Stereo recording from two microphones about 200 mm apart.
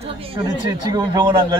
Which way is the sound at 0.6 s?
20° right (ahead or behind).